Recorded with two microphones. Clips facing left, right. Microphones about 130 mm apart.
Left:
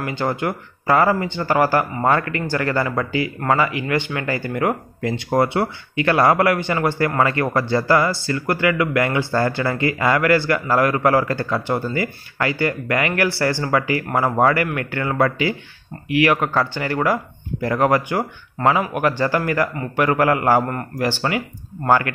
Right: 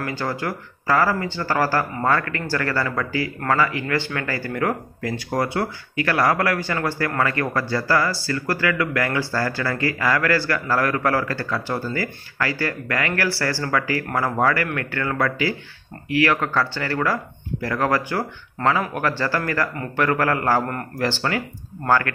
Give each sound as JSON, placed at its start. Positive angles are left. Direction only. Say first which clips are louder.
{"t": 0.0, "sound": "speech", "louder": "left 3 dB", "side_deg": 20}